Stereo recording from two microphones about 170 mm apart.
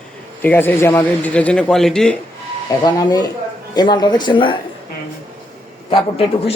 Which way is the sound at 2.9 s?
20° left (ahead or behind).